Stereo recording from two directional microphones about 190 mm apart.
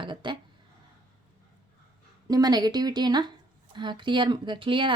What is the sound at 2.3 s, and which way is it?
A woman's voice, 20° right (ahead or behind).